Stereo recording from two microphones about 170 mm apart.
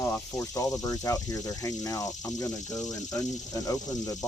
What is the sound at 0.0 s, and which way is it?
Speech, 20° left (ahead or behind).